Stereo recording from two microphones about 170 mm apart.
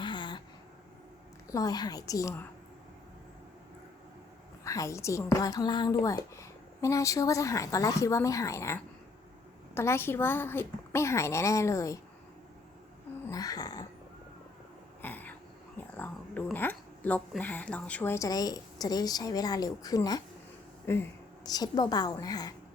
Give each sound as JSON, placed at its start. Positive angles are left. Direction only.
{"t": 0.0, "sound": "a sound", "side_deg": 25}
{"t": 1.5, "sound": "speech", "side_deg": 20}
{"t": 4.6, "sound": "a woman's voice", "side_deg": 20}
{"t": 13.2, "sound": "speech", "side_deg": 20}
{"t": 15.0, "sound": "a sound", "side_deg": 10}
{"t": 16.0, "sound": "a woman's voice", "side_deg": 10}